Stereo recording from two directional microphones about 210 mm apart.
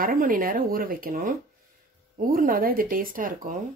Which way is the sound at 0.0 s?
40° right (ahead or behind).